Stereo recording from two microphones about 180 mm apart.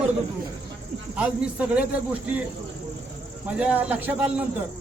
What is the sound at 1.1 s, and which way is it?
Speech, 5° right (ahead or behind).